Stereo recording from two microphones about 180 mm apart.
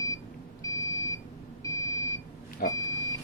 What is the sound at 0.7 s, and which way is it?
Beep, 20° left (ahead or behind).